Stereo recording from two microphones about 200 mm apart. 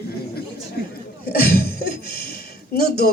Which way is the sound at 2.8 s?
50° left (ahead or behind).